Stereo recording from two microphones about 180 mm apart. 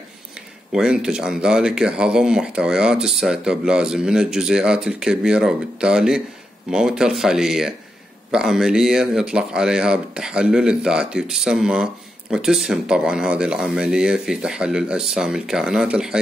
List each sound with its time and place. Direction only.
0.7 s speech: 5° right (ahead or behind)